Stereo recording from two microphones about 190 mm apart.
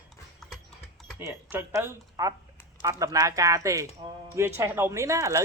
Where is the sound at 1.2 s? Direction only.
10° right (ahead or behind).